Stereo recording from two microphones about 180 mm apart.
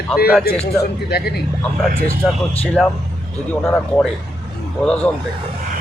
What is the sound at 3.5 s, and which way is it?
Speech, 10° left (ahead or behind).